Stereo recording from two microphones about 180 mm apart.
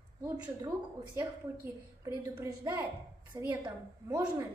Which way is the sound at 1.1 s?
15° right (ahead or behind).